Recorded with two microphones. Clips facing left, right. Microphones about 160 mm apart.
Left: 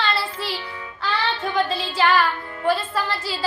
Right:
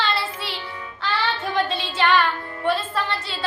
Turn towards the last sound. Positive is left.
turn(degrees=0)  # may be behind; listen again after turning